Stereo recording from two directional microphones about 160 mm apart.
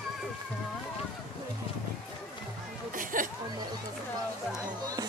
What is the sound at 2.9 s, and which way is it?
Chatter, 60° right (ahead or behind).